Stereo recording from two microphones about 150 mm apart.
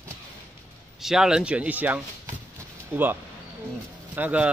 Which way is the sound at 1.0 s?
5° right (ahead or behind).